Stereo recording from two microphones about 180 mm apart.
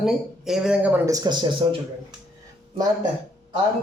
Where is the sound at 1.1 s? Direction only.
20° right (ahead or behind).